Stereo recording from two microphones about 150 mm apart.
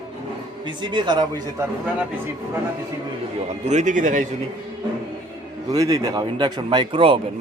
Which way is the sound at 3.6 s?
50° right (ahead or behind).